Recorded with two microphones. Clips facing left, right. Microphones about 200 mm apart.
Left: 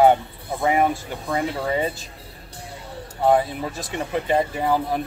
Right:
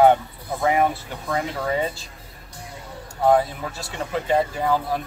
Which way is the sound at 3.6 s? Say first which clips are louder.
Left 3 dB; 20° left (ahead or behind).